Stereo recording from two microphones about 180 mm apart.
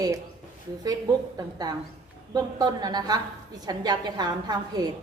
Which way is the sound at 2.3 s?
20° right (ahead or behind).